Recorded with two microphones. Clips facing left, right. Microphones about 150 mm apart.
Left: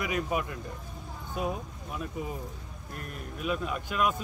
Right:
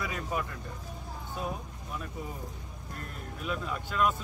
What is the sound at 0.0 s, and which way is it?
Speech, 15° left (ahead or behind).